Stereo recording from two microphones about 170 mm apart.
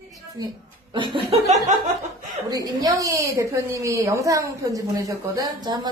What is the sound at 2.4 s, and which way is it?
A woman's voice, 25° right (ahead or behind).